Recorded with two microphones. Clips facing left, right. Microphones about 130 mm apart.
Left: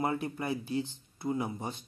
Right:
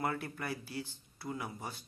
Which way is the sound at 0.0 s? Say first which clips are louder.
Left 5 dB; 20° left (ahead or behind).